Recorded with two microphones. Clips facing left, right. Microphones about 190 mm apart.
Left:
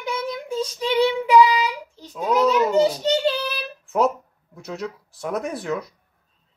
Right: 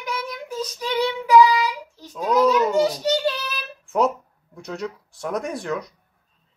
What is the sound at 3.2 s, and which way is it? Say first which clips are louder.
Child singing: left 2 dB; 30° left (ahead or behind).